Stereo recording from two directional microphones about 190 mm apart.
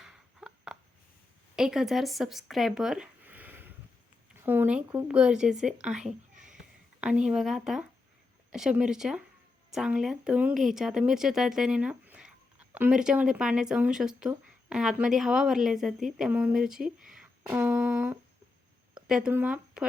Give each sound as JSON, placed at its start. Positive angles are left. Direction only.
{"t": 0.0, "sound": "a sound", "side_deg": -5}
{"t": 1.5, "sound": "speech", "side_deg": 0}
{"t": 6.3, "sound": "a sound", "side_deg": -40}
{"t": 7.0, "sound": "speech", "side_deg": -5}
{"t": 17.4, "sound": "humming", "side_deg": -10}
{"t": 19.0, "sound": "speech", "side_deg": -5}